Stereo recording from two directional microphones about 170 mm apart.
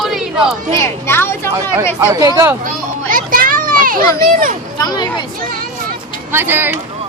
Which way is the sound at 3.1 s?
55° right (ahead or behind).